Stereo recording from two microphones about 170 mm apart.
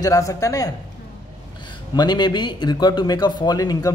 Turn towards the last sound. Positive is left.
turn(degrees=20)  # may be behind; listen again after turning